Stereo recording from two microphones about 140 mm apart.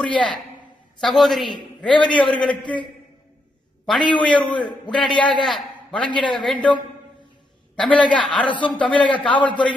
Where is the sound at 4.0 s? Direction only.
35° left (ahead or behind).